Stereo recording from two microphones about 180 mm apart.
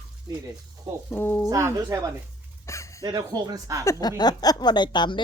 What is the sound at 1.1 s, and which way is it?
Speech, 10° left (ahead or behind).